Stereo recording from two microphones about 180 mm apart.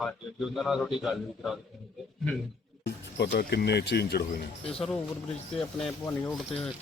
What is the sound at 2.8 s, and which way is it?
Speech, 60° left (ahead or behind).